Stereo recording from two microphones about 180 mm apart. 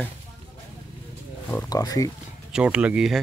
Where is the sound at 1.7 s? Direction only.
20° left (ahead or behind).